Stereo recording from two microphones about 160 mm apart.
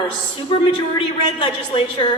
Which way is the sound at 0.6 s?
35° left (ahead or behind).